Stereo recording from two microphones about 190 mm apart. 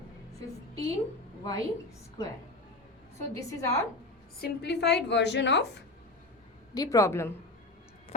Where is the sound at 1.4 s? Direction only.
20° left (ahead or behind).